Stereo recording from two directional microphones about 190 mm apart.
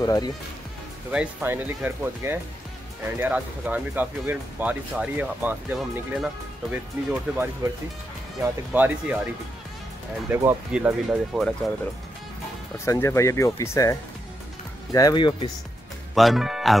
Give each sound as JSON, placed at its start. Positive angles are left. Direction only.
{"t": 0.0, "sound": "speech", "side_deg": 20}
{"t": 1.1, "sound": "speech", "side_deg": -10}
{"t": 10.3, "sound": "speech", "side_deg": -10}
{"t": 12.7, "sound": "speech", "side_deg": 15}
{"t": 16.2, "sound": "speech", "side_deg": 0}